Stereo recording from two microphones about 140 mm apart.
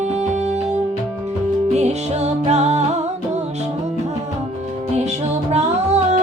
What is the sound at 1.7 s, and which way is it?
Music, 50° right (ahead or behind).